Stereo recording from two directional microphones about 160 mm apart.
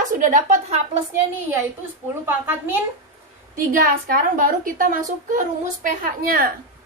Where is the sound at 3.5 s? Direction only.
60° right (ahead or behind).